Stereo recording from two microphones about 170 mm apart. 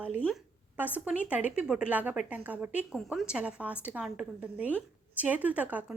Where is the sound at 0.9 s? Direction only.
10° right (ahead or behind).